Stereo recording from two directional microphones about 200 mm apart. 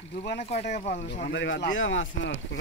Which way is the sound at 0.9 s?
60° left (ahead or behind).